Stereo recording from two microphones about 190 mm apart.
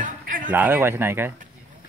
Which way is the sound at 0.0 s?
45° right (ahead or behind).